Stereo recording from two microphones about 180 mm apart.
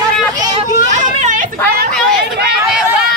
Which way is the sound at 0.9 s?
45° right (ahead or behind).